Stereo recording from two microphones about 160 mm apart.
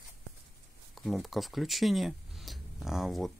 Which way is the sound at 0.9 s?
Centre (ahead or behind).